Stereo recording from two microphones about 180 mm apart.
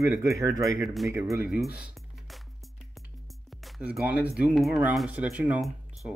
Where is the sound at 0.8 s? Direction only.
Centre (ahead or behind).